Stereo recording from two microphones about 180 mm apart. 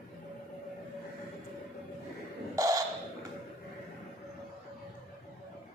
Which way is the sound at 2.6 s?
20° right (ahead or behind).